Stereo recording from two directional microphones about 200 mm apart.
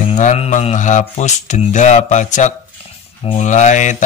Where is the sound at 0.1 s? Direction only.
35° left (ahead or behind).